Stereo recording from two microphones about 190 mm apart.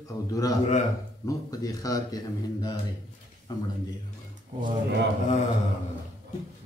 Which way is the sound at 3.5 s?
20° left (ahead or behind).